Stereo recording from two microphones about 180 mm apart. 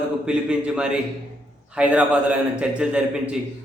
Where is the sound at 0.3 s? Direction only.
5° right (ahead or behind).